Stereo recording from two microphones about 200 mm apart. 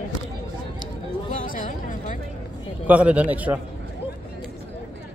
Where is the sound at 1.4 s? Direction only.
45° left (ahead or behind).